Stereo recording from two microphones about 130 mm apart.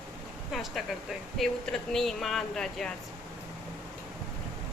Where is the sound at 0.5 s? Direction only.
Centre (ahead or behind).